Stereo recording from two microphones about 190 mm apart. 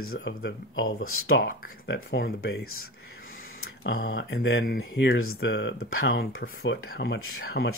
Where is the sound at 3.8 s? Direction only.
75° left (ahead or behind).